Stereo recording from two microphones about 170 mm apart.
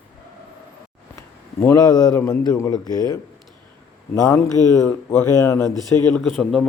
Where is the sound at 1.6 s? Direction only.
20° left (ahead or behind).